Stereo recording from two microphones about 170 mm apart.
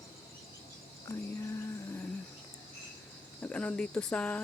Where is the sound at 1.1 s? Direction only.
15° left (ahead or behind).